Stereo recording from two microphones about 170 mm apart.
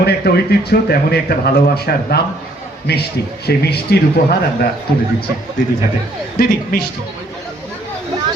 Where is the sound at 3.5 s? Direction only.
70° left (ahead or behind).